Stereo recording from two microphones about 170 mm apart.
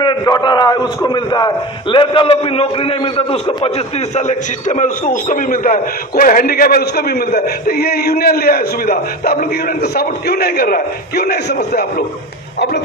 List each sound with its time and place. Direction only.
0.0 s a man's voice: 25° left (ahead or behind); by 11.8 s 70° left (ahead or behind)
12.5 s speech: 80° left